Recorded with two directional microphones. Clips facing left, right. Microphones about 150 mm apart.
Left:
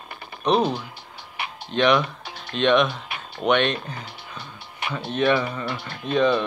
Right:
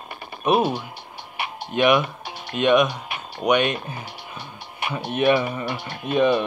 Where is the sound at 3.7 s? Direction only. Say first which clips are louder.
Right 1 dB; 15° right (ahead or behind).